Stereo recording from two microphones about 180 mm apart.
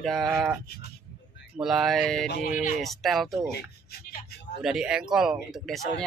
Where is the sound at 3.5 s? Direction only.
60° left (ahead or behind).